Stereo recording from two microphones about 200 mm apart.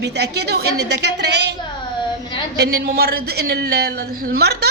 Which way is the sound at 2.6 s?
50° right (ahead or behind).